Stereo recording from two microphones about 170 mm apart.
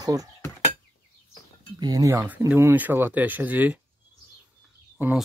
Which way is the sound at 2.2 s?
10° right (ahead or behind).